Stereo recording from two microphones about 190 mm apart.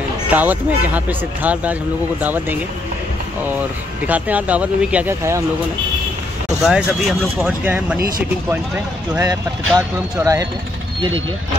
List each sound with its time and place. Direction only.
0.3 s speech: 10° right (ahead or behind)
4.0 s speech: 10° right (ahead or behind)
6.6 s speech: 5° right (ahead or behind)
9.1 s speech: 20° right (ahead or behind)